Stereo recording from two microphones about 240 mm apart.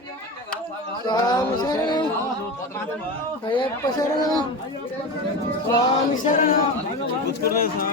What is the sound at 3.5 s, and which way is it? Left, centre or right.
Speech, centre.